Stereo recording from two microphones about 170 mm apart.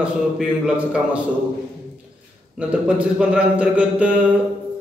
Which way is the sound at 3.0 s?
5° right (ahead or behind).